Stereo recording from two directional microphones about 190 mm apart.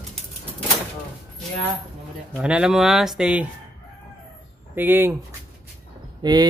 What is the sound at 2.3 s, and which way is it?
Speech, 5° right (ahead or behind).